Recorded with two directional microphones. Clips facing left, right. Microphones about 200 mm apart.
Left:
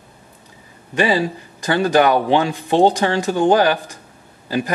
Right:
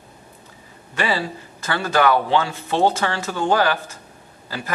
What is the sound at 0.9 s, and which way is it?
A man's voice, 15° left (ahead or behind).